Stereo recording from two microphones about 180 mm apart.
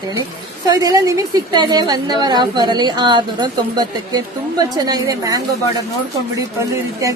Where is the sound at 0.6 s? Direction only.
20° right (ahead or behind).